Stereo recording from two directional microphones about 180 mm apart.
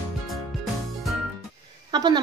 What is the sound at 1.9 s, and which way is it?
Speech, 25° right (ahead or behind).